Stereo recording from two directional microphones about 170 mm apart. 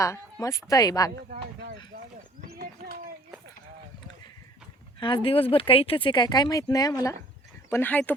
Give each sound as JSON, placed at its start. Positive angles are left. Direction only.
{"t": 0.0, "sound": "speech", "side_deg": 20}
{"t": 1.9, "sound": "a sound", "side_deg": -60}
{"t": 4.9, "sound": "speech", "side_deg": 30}